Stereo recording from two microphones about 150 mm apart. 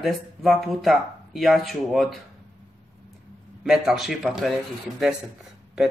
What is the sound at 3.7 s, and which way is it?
Speech, centre (ahead or behind).